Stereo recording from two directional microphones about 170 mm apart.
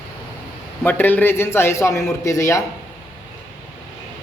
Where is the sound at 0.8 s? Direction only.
10° left (ahead or behind).